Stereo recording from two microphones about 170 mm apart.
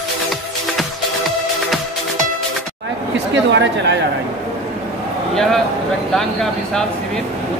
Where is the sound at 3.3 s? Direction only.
90° right.